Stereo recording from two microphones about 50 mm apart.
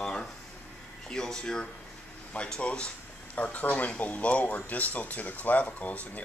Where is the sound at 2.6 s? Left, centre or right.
Left.